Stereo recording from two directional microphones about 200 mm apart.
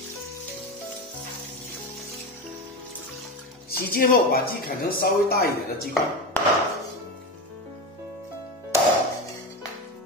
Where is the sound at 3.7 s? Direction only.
50° left (ahead or behind).